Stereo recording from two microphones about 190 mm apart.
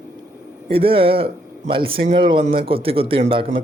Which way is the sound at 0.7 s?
30° right (ahead or behind).